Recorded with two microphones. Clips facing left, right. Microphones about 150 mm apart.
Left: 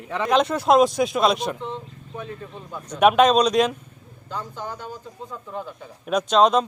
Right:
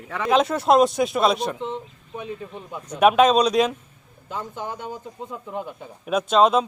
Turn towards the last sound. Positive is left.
turn(degrees=-5)  # may be behind; listen again after turning